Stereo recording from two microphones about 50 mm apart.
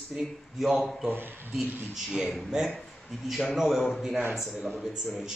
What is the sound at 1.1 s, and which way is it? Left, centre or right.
Speech, right.